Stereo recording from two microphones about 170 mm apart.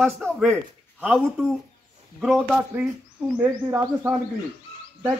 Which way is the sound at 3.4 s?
15° right (ahead or behind).